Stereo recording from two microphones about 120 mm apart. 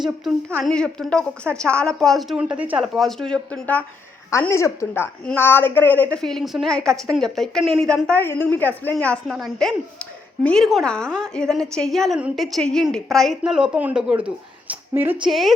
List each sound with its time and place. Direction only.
0.6 s a woman's voice: 5° left (ahead or behind)
2.4 s speech: 10° right (ahead or behind)
2.8 s a woman's voice: centre (ahead or behind)
4.3 s speech: 20° left (ahead or behind)
5.2 s a woman's voice: 15° left (ahead or behind)
8.2 s a woman's voice: 15° left (ahead or behind); by 15.2 s 15° right (ahead or behind)
15.2 s a woman's voice: centre (ahead or behind)